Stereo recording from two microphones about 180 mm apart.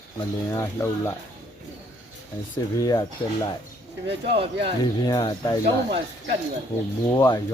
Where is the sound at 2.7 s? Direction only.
20° left (ahead or behind).